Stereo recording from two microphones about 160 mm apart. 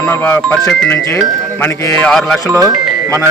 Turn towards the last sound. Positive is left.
turn(degrees=-20)  # may be behind; listen again after turning